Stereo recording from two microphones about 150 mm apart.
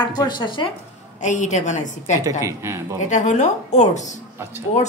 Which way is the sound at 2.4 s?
20° right (ahead or behind).